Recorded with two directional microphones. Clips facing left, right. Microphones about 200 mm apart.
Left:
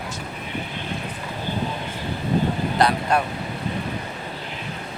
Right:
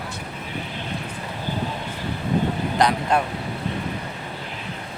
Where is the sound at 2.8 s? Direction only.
15° right (ahead or behind).